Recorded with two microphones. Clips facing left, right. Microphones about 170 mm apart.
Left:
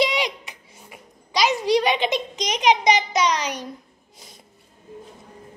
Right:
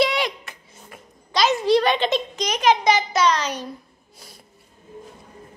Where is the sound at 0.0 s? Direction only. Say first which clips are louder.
Right 1 dB; 15° left (ahead or behind).